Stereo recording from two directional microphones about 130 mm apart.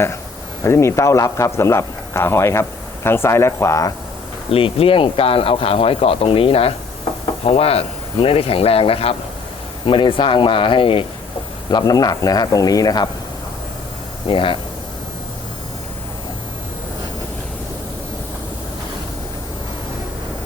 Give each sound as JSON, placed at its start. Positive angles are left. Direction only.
{"t": 0.6, "sound": "speech", "side_deg": 20}
{"t": 4.5, "sound": "speech", "side_deg": 45}
{"t": 11.7, "sound": "speech", "side_deg": 30}
{"t": 14.3, "sound": "speech", "side_deg": 40}